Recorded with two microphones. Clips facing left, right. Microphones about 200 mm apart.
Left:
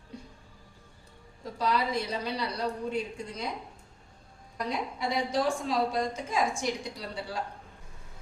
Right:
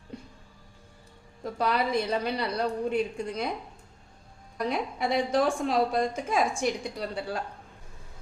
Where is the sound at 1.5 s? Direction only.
55° right (ahead or behind).